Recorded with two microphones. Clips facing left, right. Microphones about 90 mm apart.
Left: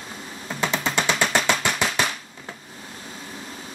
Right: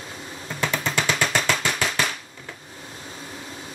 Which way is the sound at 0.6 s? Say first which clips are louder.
Left 1 dB; 20° left (ahead or behind).